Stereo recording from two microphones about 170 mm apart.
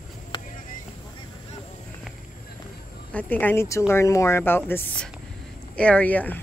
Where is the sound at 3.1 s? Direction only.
10° left (ahead or behind).